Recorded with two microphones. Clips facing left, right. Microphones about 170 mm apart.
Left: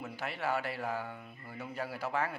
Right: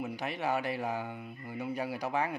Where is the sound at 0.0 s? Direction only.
15° right (ahead or behind).